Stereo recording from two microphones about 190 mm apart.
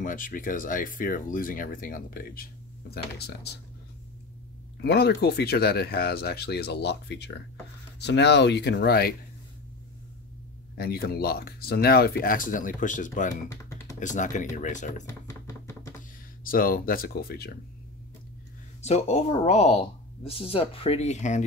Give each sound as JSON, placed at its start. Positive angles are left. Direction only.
{"t": 0.0, "sound": "speech", "side_deg": 45}
{"t": 4.8, "sound": "speech", "side_deg": 55}
{"t": 10.8, "sound": "speech", "side_deg": 55}
{"t": 13.5, "sound": "computer keyboard", "side_deg": 15}
{"t": 13.9, "sound": "speech", "side_deg": 40}
{"t": 15.0, "sound": "chopping", "side_deg": 15}
{"t": 16.4, "sound": "speech", "side_deg": 50}
{"t": 18.8, "sound": "speech", "side_deg": 35}